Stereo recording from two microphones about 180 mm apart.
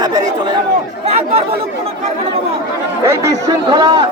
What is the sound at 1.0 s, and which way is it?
Speech, 35° right (ahead or behind).